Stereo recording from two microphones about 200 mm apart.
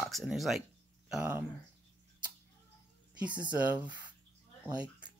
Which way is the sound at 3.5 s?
5° right (ahead or behind).